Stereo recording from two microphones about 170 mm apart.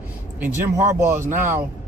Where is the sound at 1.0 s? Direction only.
15° right (ahead or behind).